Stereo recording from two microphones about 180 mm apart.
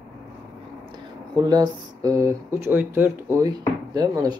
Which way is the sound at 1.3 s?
20° right (ahead or behind).